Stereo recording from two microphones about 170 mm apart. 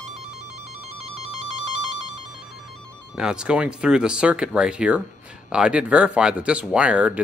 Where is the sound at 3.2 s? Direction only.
5° right (ahead or behind).